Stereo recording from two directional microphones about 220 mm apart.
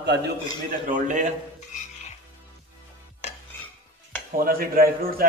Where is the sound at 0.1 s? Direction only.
50° right (ahead or behind).